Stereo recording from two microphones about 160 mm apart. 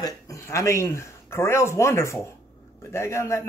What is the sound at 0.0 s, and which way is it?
A man's voice, 20° left (ahead or behind).